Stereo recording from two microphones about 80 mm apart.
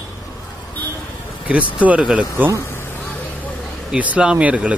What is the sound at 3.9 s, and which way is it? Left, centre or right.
Speech, centre.